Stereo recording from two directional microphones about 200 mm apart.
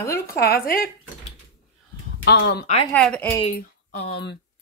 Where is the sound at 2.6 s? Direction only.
30° left (ahead or behind).